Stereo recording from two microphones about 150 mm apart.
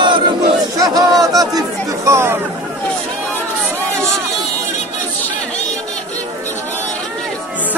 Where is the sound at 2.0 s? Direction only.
20° right (ahead or behind).